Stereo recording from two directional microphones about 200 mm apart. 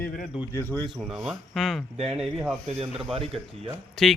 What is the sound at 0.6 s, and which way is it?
Speech, 10° left (ahead or behind).